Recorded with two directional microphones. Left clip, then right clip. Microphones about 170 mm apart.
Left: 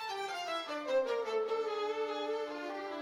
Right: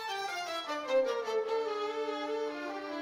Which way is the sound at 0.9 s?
20° right (ahead or behind).